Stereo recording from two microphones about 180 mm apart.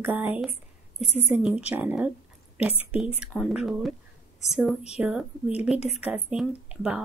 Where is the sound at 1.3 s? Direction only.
5° right (ahead or behind).